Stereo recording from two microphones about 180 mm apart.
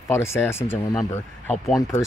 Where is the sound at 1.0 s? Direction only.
Centre (ahead or behind).